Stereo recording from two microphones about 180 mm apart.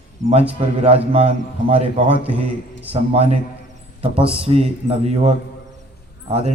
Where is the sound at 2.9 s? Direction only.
35° right (ahead or behind).